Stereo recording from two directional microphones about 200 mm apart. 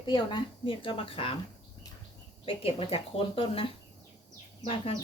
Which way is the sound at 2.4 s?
25° left (ahead or behind).